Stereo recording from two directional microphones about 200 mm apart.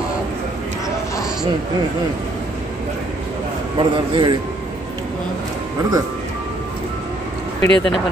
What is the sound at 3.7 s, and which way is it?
Speech, 25° right (ahead or behind).